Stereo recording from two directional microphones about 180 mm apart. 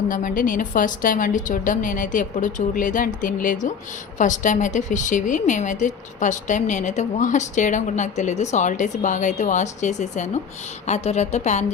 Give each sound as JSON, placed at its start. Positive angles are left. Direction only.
{"t": 0.1, "sound": "a woman's voice", "side_deg": 45}